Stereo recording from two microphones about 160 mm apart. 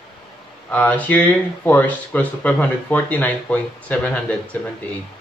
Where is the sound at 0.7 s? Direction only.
10° left (ahead or behind).